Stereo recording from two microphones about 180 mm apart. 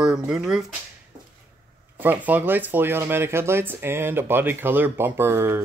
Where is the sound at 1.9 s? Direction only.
10° right (ahead or behind).